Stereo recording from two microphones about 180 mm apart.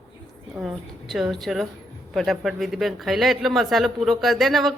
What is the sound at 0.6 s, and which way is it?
Speech, centre (ahead or behind).